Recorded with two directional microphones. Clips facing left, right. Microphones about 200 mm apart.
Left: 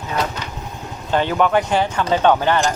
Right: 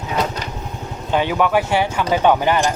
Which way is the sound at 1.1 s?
10° right (ahead or behind).